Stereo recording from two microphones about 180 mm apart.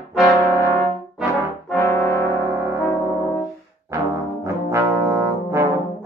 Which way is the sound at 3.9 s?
15° right (ahead or behind).